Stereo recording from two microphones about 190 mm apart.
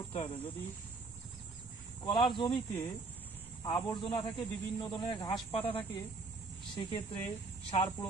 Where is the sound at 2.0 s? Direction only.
25° left (ahead or behind).